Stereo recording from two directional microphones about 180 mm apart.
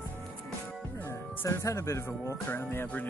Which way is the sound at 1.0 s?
15° left (ahead or behind).